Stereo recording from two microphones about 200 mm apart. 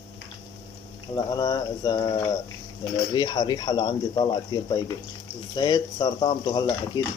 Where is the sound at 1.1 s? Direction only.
20° left (ahead or behind).